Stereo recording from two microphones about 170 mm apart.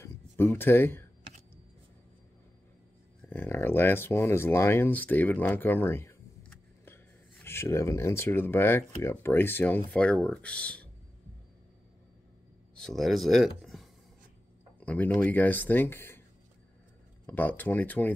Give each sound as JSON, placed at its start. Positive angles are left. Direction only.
{"t": 0.0, "sound": "speech", "side_deg": 15}
{"t": 3.3, "sound": "speech", "side_deg": 15}
{"t": 7.4, "sound": "speech", "side_deg": 15}
{"t": 12.7, "sound": "speech", "side_deg": 0}
{"t": 17.3, "sound": "speech", "side_deg": 10}